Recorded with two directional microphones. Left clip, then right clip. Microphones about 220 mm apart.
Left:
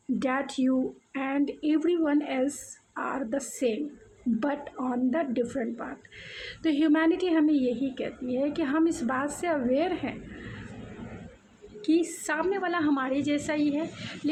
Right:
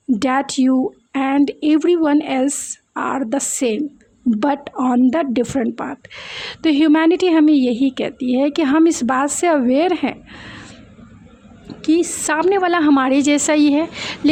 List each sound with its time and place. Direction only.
0.2 s speech: 45° right (ahead or behind)
11.8 s speech: 40° right (ahead or behind)